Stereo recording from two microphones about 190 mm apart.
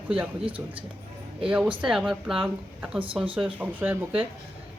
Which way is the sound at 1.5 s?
5° right (ahead or behind).